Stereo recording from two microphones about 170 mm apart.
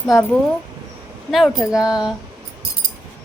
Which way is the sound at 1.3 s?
Centre (ahead or behind).